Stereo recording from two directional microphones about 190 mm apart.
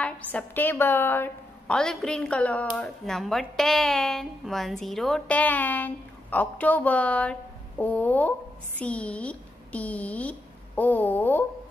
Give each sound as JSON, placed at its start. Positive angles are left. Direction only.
{"t": 0.0, "sound": "a woman's voice", "side_deg": 5}